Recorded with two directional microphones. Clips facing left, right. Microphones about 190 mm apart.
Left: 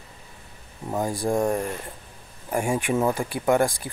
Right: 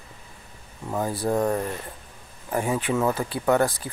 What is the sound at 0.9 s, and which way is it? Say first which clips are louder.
Speech: even; 10° left (ahead or behind).